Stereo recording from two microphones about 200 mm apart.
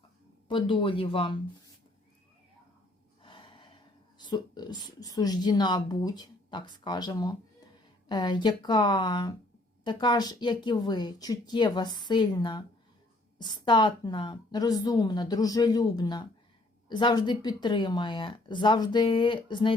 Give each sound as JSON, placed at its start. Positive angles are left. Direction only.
{"t": 0.4, "sound": "speech", "side_deg": 25}
{"t": 3.2, "sound": "gasp", "side_deg": 25}
{"t": 4.2, "sound": "speech", "side_deg": 20}